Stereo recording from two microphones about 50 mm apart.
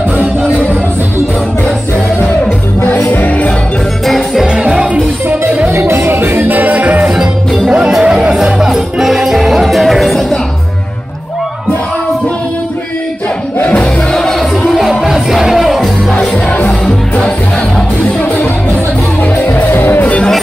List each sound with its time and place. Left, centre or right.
2.8 s music: left
4.0 s music: centre
4.5 s music: centre
5.7 s music: right
7.1 s music: centre
13.6 s crowd: left
14.1 s music: centre
14.7 s music: centre
15.8 s music: centre
19.7 s music: left